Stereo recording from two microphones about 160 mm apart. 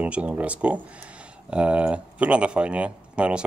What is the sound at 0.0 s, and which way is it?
Speech, 5° right (ahead or behind).